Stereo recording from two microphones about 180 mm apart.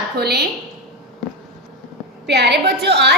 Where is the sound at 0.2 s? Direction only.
65° right (ahead or behind).